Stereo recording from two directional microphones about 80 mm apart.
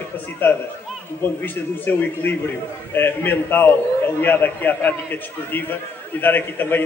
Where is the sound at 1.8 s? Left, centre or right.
Left.